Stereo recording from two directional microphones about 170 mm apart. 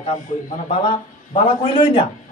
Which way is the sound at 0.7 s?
30° left (ahead or behind).